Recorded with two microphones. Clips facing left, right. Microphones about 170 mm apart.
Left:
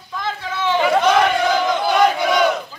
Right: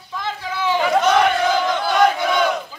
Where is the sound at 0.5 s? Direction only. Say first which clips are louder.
Left 1 dB; 10° right (ahead or behind).